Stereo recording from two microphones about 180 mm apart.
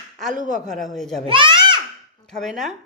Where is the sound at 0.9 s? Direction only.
Centre (ahead or behind).